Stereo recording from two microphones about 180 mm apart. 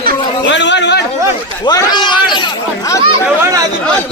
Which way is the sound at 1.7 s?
20° left (ahead or behind).